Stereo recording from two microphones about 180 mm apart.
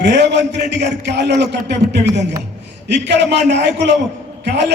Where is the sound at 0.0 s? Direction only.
70° right (ahead or behind).